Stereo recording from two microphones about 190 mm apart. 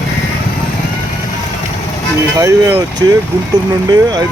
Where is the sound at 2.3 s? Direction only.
15° right (ahead or behind).